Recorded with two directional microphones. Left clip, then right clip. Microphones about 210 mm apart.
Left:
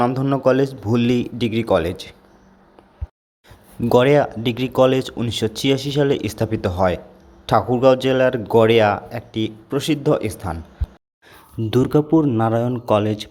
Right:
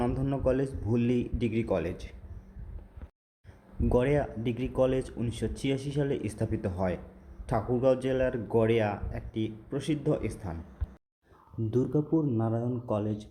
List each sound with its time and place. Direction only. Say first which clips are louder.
0.0 s speech: left 12 dB; 10° left (ahead or behind)
3.8 s speech: left 13 dB; 15° left (ahead or behind)
11.7 s speech: left 12 dB; 15° left (ahead or behind)